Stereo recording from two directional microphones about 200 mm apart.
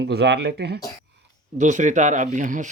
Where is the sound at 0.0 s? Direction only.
55° right (ahead or behind).